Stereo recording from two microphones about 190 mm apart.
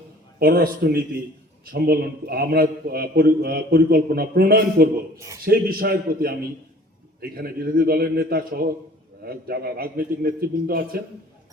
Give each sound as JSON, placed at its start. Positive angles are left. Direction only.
{"t": 0.3, "sound": "a man's voice", "side_deg": -50}
{"t": 5.1, "sound": "speech", "side_deg": -15}
{"t": 5.5, "sound": "a man's voice", "side_deg": -50}